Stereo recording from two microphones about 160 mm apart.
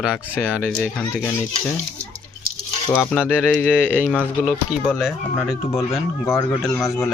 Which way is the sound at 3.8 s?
10° right (ahead or behind).